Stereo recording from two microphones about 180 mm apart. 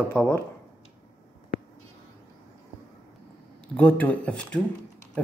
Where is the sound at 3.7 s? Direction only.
10° left (ahead or behind).